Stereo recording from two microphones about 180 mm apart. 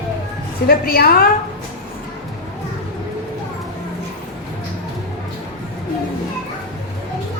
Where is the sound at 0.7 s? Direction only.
55° left (ahead or behind).